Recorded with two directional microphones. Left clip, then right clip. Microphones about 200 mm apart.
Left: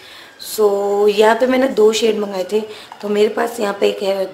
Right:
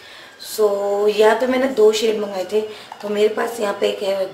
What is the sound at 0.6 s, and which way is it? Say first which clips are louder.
Speech: left 3 dB; 50° left (ahead or behind).